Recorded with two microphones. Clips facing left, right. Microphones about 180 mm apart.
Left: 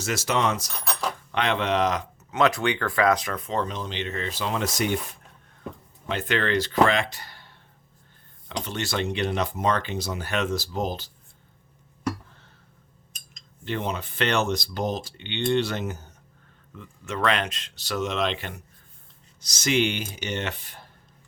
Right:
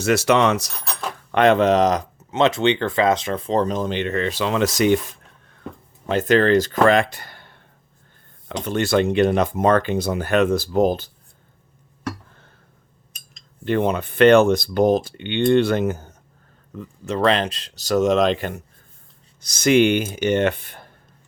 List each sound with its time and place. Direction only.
0.0 s speech: 65° right (ahead or behind)
1.3 s speech: 50° right (ahead or behind)
2.3 s speech: 25° right (ahead or behind); by 4.9 s 90° right
6.1 s speech: 40° right (ahead or behind)
8.6 s speech: 55° right (ahead or behind)
13.7 s speech: 55° right (ahead or behind)
16.7 s speech: 35° right (ahead or behind); by 20.9 s 55° right (ahead or behind)